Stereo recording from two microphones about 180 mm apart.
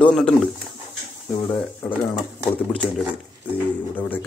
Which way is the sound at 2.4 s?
5° left (ahead or behind).